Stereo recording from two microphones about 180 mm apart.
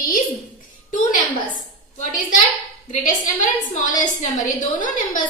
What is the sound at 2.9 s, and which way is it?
A woman's voice, 45° left (ahead or behind).